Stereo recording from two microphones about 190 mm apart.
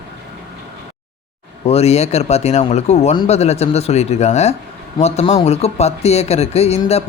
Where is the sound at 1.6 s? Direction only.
35° left (ahead or behind).